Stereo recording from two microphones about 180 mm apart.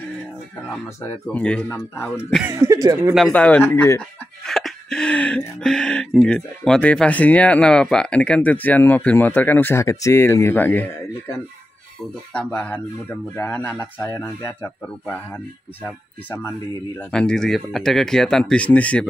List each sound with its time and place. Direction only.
1.3 s speech: 5° left (ahead or behind)
2.4 s speech: 15° right (ahead or behind)
3.2 s speech: 5° left (ahead or behind)
4.5 s music: centre (ahead or behind)
6.2 s speech: 5° left (ahead or behind)
12.4 s speech: 5° left (ahead or behind)